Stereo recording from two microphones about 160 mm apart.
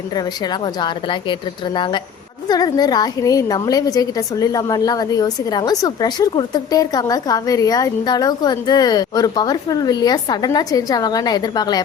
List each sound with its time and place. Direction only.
0.2 s a woman's voice: 25° left (ahead or behind)